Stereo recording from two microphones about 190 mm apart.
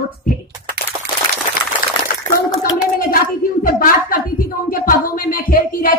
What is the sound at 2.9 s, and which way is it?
A woman's voice, 50° left (ahead or behind).